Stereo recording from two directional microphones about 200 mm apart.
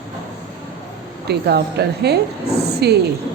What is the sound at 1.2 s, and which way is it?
A woman's voice, 55° right (ahead or behind).